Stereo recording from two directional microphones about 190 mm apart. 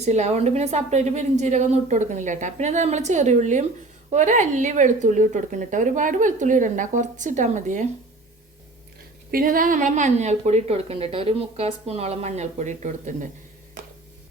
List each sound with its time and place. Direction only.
0.0 s a woman's voice: 35° right (ahead or behind)
9.3 s a woman's voice: 45° right (ahead or behind)